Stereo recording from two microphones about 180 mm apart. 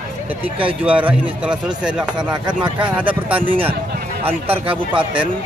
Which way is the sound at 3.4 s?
30° right (ahead or behind).